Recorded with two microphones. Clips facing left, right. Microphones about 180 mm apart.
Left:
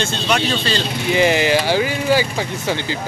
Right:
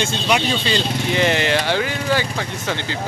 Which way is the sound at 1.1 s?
10° left (ahead or behind).